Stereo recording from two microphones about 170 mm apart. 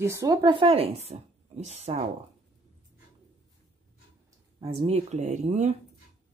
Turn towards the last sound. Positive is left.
turn(degrees=-40)  # may be behind; listen again after turning